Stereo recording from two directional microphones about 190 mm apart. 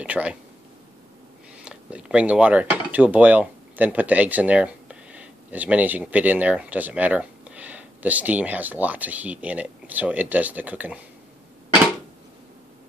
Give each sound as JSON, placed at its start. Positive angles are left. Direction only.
{"t": 0.0, "sound": "speech", "side_deg": -5}
{"t": 1.6, "sound": "speech", "side_deg": -5}